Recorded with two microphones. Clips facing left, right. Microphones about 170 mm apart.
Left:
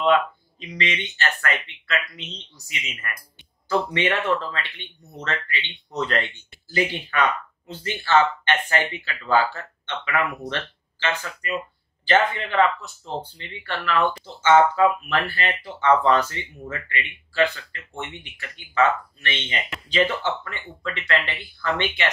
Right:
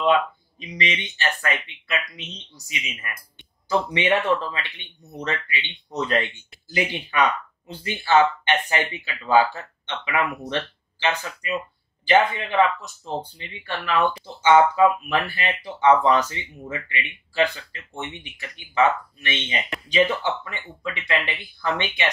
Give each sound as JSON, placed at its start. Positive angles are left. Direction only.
{"t": 0.0, "sound": "speech", "side_deg": -15}